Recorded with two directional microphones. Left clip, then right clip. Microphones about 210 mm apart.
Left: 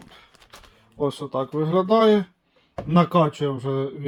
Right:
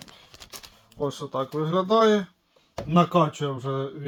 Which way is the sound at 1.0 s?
35° left (ahead or behind).